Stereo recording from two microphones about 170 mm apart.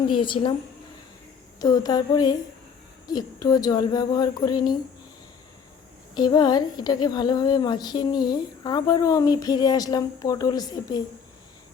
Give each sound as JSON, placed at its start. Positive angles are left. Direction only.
{"t": 0.1, "sound": "a woman's voice", "side_deg": 30}
{"t": 1.6, "sound": "a woman's voice", "side_deg": 20}
{"t": 6.1, "sound": "a woman's voice", "side_deg": 25}